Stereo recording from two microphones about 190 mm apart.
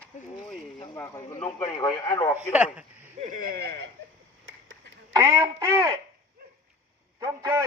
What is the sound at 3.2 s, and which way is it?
Speech, 45° right (ahead or behind).